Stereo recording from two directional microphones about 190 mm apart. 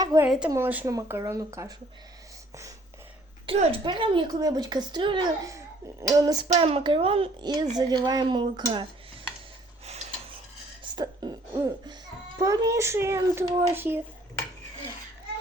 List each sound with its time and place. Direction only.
0.0 s a woman's voice: 20° right (ahead or behind)
0.3 s a woman's voice: 5° right (ahead or behind)
3.4 s speech: 30° right (ahead or behind)
6.5 s speech: 30° right (ahead or behind)
10.8 s a child's voice: 25° right (ahead or behind)